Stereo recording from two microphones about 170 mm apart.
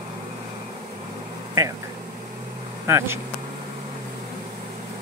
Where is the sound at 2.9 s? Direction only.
15° right (ahead or behind).